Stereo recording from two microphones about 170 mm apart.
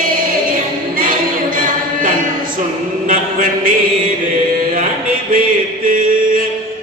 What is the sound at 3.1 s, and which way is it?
Mantra, 55° right (ahead or behind).